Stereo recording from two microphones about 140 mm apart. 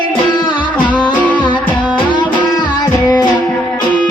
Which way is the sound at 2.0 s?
35° left (ahead or behind).